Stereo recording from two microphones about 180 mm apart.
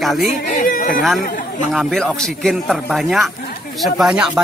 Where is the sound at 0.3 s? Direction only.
50° left (ahead or behind).